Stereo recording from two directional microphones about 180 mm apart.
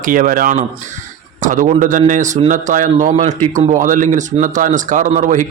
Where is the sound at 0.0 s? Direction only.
50° right (ahead or behind).